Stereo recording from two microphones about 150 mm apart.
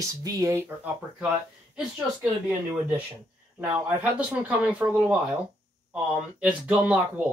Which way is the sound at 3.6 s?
10° right (ahead or behind).